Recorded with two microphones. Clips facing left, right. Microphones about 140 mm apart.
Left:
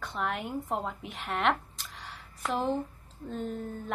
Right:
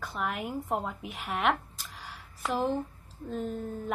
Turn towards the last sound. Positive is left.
turn(degrees=-5)  # may be behind; listen again after turning